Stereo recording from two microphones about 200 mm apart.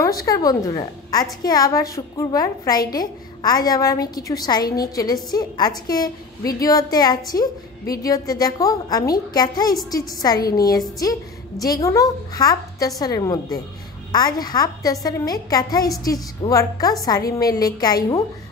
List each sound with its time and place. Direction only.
0.2 s a woman's voice: 20° left (ahead or behind)